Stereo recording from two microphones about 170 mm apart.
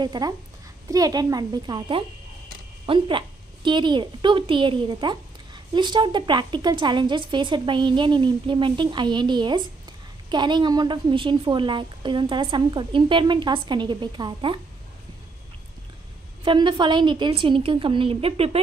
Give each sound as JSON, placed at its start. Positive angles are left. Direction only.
{"t": 0.0, "sound": "a woman's voice", "side_deg": -25}
{"t": 16.4, "sound": "a woman's voice", "side_deg": -30}